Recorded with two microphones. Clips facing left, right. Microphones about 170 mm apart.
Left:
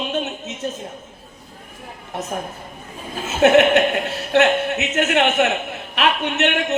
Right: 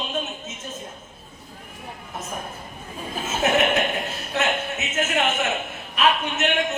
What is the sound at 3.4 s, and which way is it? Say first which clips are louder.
A woman's voice: left 8 dB; 70° left (ahead or behind).